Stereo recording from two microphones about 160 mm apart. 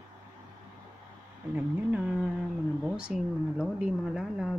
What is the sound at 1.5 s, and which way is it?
A woman's voice, 5° right (ahead or behind).